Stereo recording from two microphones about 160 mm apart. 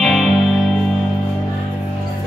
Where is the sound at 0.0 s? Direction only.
Centre (ahead or behind).